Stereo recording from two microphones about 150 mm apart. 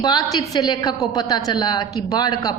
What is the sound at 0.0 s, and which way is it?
A woman's voice, 25° left (ahead or behind).